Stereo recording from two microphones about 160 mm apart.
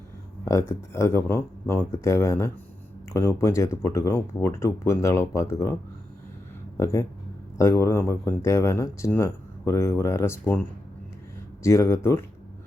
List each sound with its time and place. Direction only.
0.4 s speech: 15° left (ahead or behind)
6.7 s speech: 20° left (ahead or behind)